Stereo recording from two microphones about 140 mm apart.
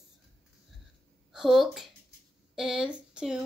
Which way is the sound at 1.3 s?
Centre (ahead or behind).